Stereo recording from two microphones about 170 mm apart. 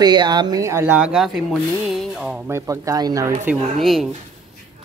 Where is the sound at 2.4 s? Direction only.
15° right (ahead or behind).